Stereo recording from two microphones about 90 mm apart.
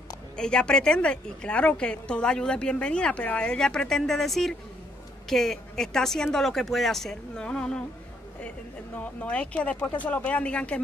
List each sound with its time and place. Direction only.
0.4 s a woman's voice: 10° left (ahead or behind)